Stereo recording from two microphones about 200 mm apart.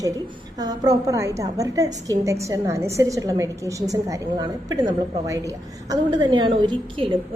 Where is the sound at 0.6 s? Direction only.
20° right (ahead or behind).